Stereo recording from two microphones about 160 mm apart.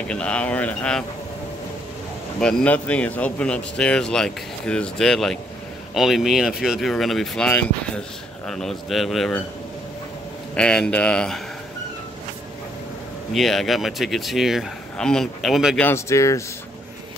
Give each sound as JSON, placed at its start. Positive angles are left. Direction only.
{"t": 0.1, "sound": "speech", "side_deg": 5}
{"t": 2.4, "sound": "speech", "side_deg": 10}
{"t": 10.5, "sound": "speech", "side_deg": 5}
{"t": 13.3, "sound": "speech", "side_deg": 0}
{"t": 15.8, "sound": "speech", "side_deg": 15}